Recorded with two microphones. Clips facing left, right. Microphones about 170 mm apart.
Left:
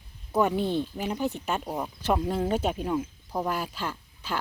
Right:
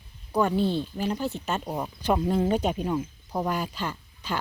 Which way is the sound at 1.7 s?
5° right (ahead or behind).